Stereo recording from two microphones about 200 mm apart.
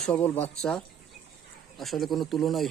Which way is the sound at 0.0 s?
5° left (ahead or behind).